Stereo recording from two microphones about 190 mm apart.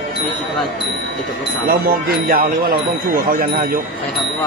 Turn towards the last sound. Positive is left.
turn(degrees=-50)  # may be behind; listen again after turning